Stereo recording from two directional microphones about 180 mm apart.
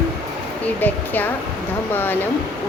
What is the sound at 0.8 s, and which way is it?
A woman's voice, 10° left (ahead or behind).